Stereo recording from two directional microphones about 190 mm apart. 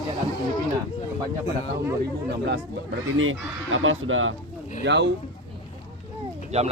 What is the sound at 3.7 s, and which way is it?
Speech, 90° right.